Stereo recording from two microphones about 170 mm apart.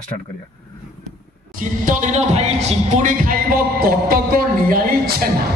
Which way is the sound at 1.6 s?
50° right (ahead or behind).